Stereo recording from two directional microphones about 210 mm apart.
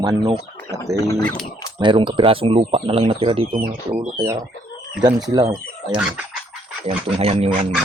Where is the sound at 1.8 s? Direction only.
25° right (ahead or behind).